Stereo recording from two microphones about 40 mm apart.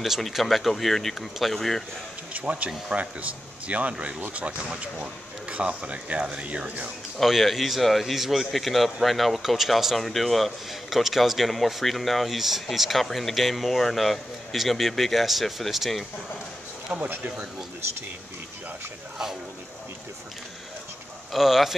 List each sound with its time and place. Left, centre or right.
0.3 s speech: centre
2.3 s speech: right
7.2 s speech: centre
21.3 s speech: centre